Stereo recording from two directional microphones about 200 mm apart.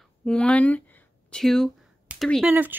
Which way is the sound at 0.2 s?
5° left (ahead or behind).